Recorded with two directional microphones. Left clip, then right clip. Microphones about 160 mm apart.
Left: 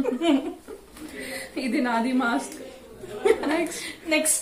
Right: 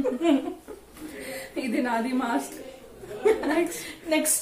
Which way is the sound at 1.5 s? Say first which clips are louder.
Left 1 dB; 10° right (ahead or behind).